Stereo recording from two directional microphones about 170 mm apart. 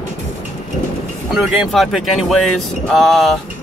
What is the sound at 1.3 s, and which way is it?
Speech, 5° right (ahead or behind).